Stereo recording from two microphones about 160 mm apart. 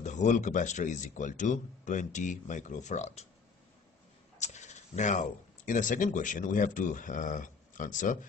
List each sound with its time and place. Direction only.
0.0 s speech: 50° left (ahead or behind)
4.4 s speech: 45° left (ahead or behind)